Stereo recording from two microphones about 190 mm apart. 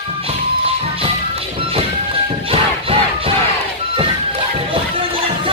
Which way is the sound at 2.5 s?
30° right (ahead or behind).